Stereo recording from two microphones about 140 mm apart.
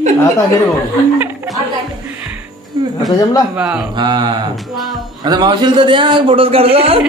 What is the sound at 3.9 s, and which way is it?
A man's voice, 30° right (ahead or behind).